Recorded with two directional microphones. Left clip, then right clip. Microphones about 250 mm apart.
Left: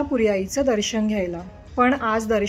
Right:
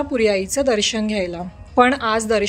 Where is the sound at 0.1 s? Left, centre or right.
Right.